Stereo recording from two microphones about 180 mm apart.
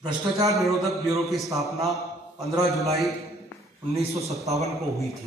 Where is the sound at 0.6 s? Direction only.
Centre (ahead or behind).